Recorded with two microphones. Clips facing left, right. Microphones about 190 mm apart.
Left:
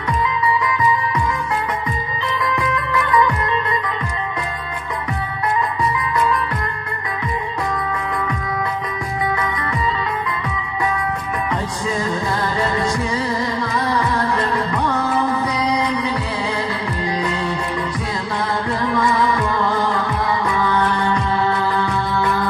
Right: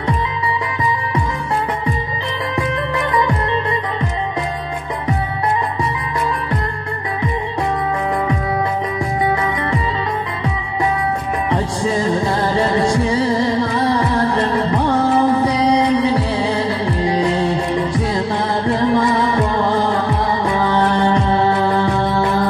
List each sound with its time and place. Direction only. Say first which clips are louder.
2.4 s music: right 2 dB; 35° right (ahead or behind)
9.2 s music: right 3 dB; 30° right (ahead or behind)
11.5 s music: right 6 dB; 30° right (ahead or behind)